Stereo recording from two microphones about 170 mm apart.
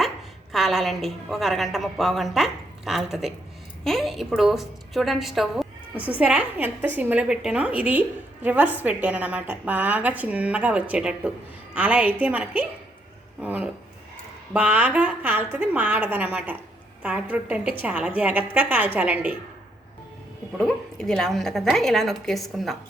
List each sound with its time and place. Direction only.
0.5 s a woman's voice: centre (ahead or behind)
20.6 s a woman's voice: centre (ahead or behind)